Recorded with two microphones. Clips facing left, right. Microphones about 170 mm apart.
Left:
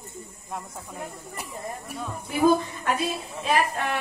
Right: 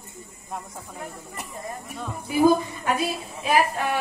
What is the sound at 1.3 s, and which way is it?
Speech, centre (ahead or behind).